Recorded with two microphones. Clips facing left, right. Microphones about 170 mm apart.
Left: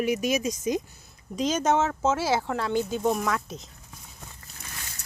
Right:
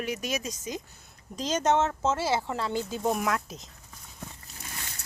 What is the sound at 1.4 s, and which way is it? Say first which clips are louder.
Speech: left 1 dB; 5° left (ahead or behind).